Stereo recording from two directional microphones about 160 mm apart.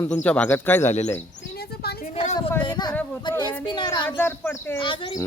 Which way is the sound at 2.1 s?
45° left (ahead or behind).